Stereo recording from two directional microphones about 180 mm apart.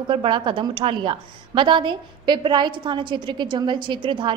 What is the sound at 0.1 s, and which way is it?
A woman's voice, 30° right (ahead or behind).